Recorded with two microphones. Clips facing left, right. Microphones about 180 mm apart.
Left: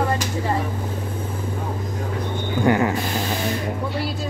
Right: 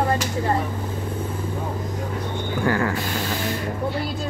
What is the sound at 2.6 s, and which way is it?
Speech, 20° left (ahead or behind).